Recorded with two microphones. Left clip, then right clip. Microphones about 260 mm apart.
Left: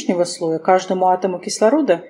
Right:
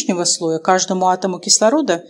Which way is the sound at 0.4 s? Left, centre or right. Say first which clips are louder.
Right 1 dB; right.